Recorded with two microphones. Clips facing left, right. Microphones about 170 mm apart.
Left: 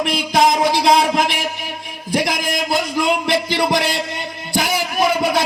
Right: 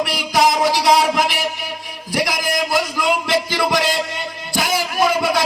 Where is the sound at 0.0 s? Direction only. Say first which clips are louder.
Left 1 dB; 20° left (ahead or behind).